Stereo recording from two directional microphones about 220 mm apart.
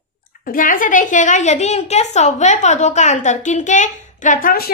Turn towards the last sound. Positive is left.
turn(degrees=40)  # may be behind; listen again after turning